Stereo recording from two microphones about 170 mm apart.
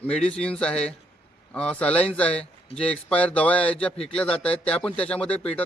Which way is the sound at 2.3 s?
35° left (ahead or behind).